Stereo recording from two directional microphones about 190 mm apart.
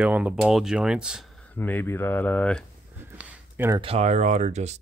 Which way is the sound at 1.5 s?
10° left (ahead or behind).